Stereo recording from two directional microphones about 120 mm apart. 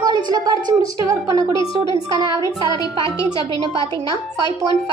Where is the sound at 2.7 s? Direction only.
30° left (ahead or behind).